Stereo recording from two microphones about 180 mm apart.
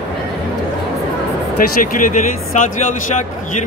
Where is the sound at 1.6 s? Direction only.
50° left (ahead or behind).